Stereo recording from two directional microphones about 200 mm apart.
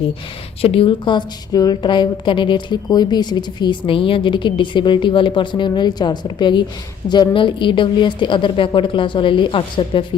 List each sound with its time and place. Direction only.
0.6 s a woman's voice: 30° left (ahead or behind)